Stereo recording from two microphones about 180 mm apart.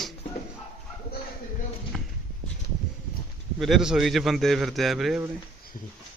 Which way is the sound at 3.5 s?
Centre (ahead or behind).